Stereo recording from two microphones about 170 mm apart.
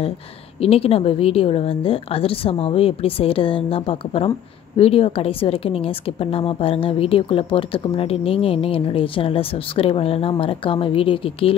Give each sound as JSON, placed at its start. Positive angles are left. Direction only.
{"t": 0.6, "sound": "a woman's voice", "side_deg": 35}